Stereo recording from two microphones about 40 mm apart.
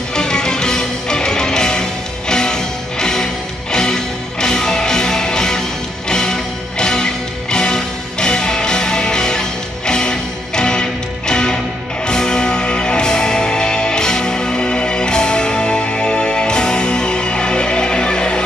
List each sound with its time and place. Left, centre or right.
0.1 s music: centre